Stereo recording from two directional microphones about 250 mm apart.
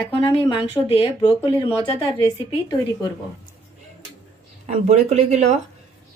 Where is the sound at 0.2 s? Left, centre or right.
Centre.